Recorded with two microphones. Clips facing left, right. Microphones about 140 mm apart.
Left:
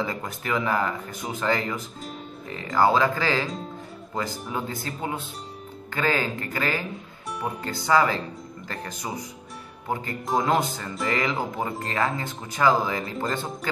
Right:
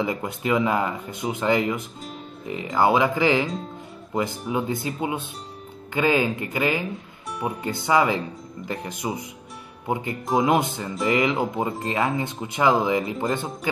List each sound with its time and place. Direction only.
0.0 s speech: 20° right (ahead or behind)
10.3 s speech: 20° right (ahead or behind)